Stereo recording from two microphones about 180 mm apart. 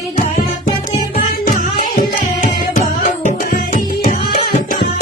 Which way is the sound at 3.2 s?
50° left (ahead or behind).